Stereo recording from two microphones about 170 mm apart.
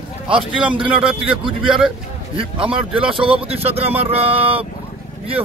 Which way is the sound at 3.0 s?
30° right (ahead or behind).